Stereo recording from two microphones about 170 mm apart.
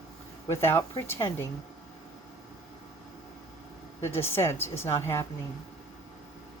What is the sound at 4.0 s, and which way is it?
Speech, 15° left (ahead or behind).